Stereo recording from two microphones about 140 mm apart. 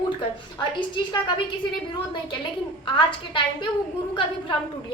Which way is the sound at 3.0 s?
35° left (ahead or behind).